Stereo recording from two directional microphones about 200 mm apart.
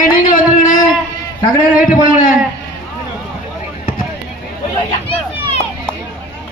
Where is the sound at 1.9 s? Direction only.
45° left (ahead or behind).